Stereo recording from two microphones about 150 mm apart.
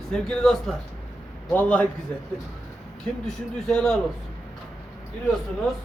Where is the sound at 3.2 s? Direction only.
5° left (ahead or behind).